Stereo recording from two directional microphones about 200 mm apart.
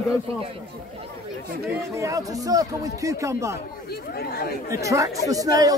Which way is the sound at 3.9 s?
50° left (ahead or behind).